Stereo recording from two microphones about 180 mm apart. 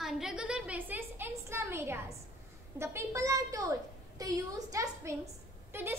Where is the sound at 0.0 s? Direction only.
Centre (ahead or behind).